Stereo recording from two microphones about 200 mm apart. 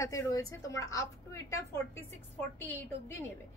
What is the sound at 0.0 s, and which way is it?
A woman's voice, 15° left (ahead or behind).